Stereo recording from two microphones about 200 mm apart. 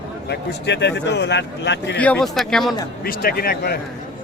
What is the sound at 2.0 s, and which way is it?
Speech, 5° left (ahead or behind).